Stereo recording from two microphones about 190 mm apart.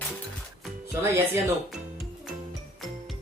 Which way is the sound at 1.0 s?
15° right (ahead or behind).